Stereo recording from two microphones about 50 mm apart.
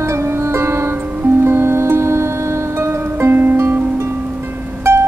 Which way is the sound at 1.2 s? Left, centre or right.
Right.